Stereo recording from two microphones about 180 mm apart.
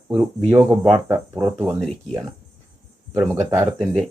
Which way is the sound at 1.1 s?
15° right (ahead or behind).